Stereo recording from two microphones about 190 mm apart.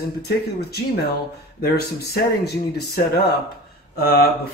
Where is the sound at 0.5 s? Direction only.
55° left (ahead or behind).